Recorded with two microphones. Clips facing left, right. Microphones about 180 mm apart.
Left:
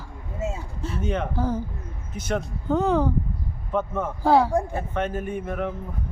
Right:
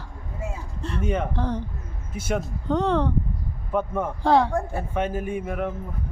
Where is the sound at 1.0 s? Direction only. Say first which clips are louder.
Right 1 dB; 10° right (ahead or behind).